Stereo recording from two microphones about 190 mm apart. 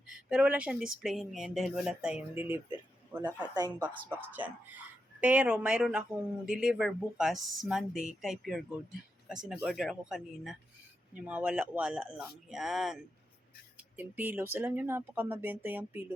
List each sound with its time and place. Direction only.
0.1 s speech: 5° right (ahead or behind)
3.5 s speech: 20° right (ahead or behind)
3.8 s speech: 10° right (ahead or behind)